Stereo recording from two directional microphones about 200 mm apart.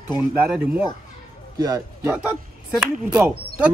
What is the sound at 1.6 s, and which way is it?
Speech, 20° right (ahead or behind).